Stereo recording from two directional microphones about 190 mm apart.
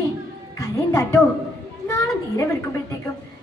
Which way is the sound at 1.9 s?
15° left (ahead or behind).